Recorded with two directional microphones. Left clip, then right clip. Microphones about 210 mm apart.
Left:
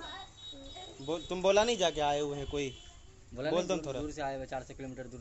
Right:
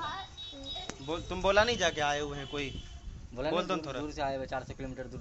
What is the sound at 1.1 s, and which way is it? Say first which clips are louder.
A man's voice: left 1 dB; 30° left (ahead or behind).